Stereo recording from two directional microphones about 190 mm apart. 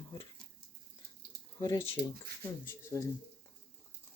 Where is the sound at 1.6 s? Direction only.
15° left (ahead or behind).